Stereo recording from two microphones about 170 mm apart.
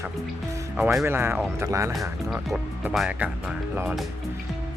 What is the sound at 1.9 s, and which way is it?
Speech, centre (ahead or behind).